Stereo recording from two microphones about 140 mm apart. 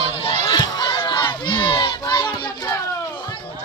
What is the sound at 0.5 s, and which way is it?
Crowd, 30° left (ahead or behind).